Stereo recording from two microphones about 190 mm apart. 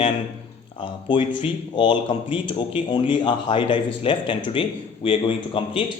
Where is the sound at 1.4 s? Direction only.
25° left (ahead or behind).